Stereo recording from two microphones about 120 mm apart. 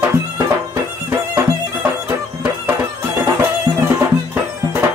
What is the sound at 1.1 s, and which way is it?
Music, 15° right (ahead or behind).